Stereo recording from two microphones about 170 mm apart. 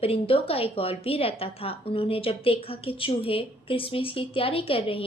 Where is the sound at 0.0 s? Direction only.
35° left (ahead or behind).